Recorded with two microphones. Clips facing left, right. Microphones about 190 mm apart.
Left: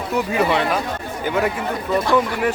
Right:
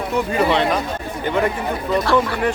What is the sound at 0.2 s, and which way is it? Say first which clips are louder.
Speech: right 1 dB; 5° left (ahead or behind).